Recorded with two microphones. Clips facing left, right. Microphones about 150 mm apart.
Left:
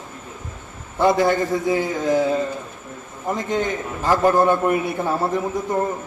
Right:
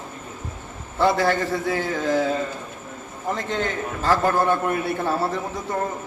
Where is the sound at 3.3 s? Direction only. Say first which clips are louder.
Left 4 dB; 15° left (ahead or behind).